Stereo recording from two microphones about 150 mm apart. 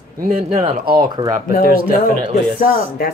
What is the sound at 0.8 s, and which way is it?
Speech, 90° right.